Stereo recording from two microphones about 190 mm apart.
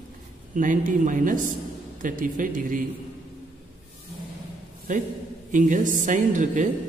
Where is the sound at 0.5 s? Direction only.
45° right (ahead or behind).